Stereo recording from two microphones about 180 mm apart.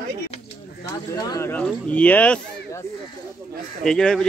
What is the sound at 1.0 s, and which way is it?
Speech, 20° left (ahead or behind).